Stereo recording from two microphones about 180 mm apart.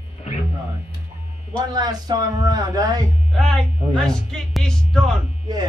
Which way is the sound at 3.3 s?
5° left (ahead or behind).